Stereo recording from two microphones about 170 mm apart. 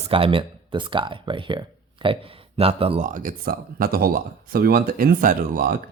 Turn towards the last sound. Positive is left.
turn(degrees=-55)  # may be behind; listen again after turning